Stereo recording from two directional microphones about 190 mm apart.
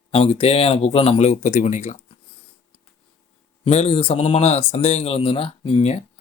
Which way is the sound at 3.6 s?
35° left (ahead or behind).